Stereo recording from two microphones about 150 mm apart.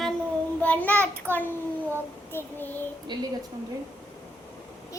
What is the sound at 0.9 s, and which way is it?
Child singing, 15° right (ahead or behind).